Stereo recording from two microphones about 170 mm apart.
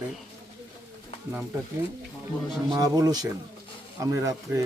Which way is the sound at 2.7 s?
25° right (ahead or behind).